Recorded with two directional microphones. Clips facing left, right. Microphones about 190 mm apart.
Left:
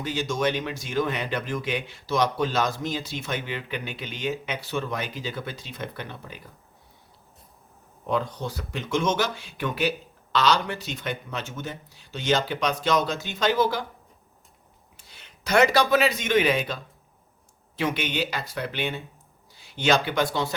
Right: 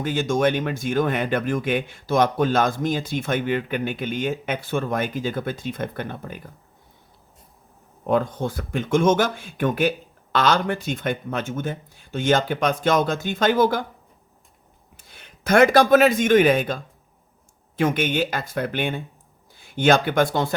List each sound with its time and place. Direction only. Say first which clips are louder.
0.0 s speech: right 5 dB; 50° right (ahead or behind)
8.0 s speech: right 6 dB; 50° right (ahead or behind)
14.9 s speech: right 4 dB; 50° right (ahead or behind)